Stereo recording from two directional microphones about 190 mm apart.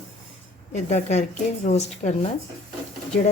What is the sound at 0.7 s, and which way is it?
Speech, 35° left (ahead or behind).